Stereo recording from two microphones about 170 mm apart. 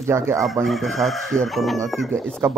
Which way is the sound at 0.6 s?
Centre (ahead or behind).